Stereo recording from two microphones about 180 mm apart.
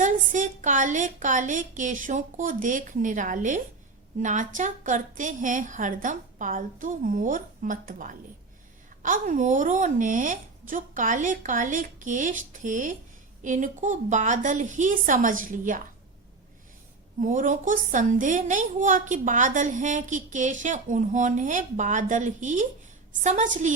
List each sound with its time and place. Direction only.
0.0 s a woman's voice: 45° right (ahead or behind)
17.2 s a woman's voice: 45° right (ahead or behind)